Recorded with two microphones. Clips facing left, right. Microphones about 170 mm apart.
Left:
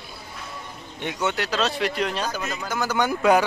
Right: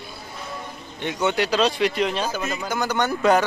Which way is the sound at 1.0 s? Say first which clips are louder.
Right 4 dB; 5° left (ahead or behind).